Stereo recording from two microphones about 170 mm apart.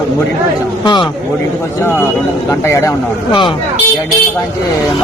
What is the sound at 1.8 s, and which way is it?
A man's voice, 15° left (ahead or behind).